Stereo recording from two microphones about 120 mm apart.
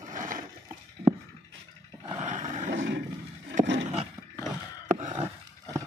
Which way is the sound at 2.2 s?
90° right.